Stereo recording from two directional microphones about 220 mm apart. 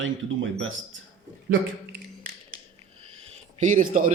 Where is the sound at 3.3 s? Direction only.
35° right (ahead or behind).